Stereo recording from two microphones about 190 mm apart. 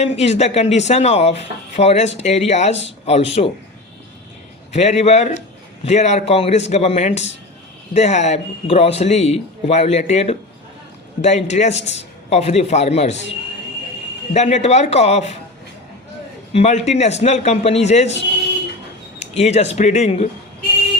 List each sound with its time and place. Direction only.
0.0 s speech: 35° left (ahead or behind)
4.7 s speech: 35° left (ahead or behind)
14.3 s speech: 35° left (ahead or behind)
16.5 s speech: 35° left (ahead or behind)
19.2 s speech: 35° left (ahead or behind)